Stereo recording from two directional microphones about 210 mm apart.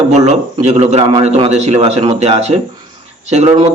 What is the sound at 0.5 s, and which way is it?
A man's voice, 30° right (ahead or behind).